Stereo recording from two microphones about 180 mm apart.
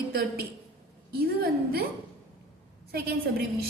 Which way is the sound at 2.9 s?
60° right (ahead or behind).